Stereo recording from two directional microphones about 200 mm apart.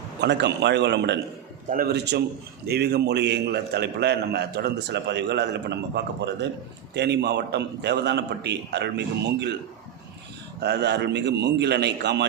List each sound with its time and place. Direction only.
0.2 s a man's voice: 60° right (ahead or behind)
10.6 s a man's voice: 60° right (ahead or behind)